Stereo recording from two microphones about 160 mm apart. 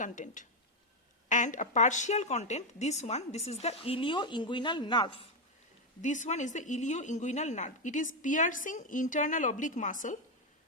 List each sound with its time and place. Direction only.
0.0 s speech: 50° left (ahead or behind); by 5.2 s 30° left (ahead or behind)
6.0 s speech: 50° left (ahead or behind)